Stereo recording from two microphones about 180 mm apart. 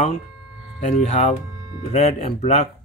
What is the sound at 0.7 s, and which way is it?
Speech, 40° left (ahead or behind).